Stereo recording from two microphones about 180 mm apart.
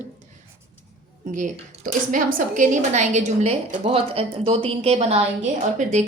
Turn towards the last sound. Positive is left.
turn(degrees=-40)  # may be behind; listen again after turning